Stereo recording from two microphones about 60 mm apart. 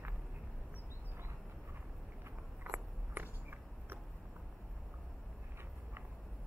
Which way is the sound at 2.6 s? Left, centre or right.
Right.